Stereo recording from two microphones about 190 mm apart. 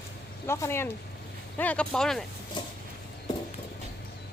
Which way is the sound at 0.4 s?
15° left (ahead or behind).